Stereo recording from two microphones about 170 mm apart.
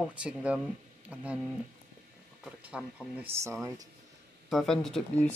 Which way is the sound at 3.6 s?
20° right (ahead or behind).